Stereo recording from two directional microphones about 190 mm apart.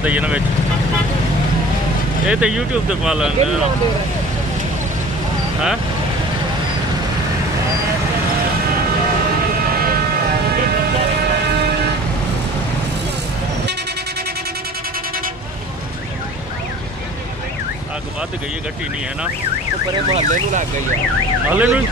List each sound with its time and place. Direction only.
0.0 s emergency vehicle: 10° right (ahead or behind)
2.2 s speech: 5° right (ahead or behind)
20.1 s car alarm: 35° right (ahead or behind)
21.5 s emergency vehicle: 10° right (ahead or behind)